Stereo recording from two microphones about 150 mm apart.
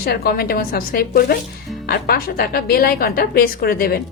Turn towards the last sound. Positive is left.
turn(degrees=90)